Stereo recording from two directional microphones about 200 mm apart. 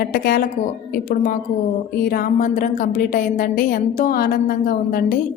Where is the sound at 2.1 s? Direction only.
45° left (ahead or behind).